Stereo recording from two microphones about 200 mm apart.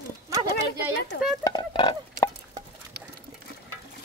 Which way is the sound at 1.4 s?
20° left (ahead or behind).